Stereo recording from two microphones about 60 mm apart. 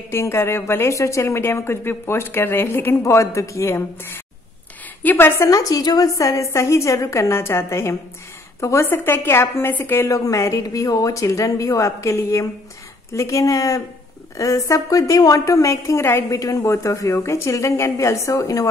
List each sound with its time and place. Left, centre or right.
0.1 s a woman's voice: left
3.0 s a woman's voice: left
5.4 s a woman's voice: left
8.8 s a woman's voice: left
10.0 s a woman's voice: left
17.1 s a woman's voice: left
17.5 s a woman's voice: left